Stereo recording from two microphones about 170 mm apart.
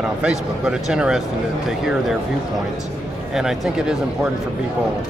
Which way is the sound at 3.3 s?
5° right (ahead or behind).